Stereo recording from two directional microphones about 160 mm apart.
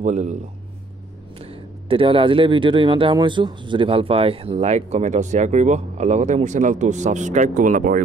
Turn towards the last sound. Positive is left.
turn(degrees=-55)  # may be behind; listen again after turning